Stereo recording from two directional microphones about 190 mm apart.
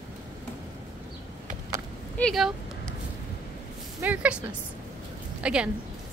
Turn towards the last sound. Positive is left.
turn(degrees=-5)  # may be behind; listen again after turning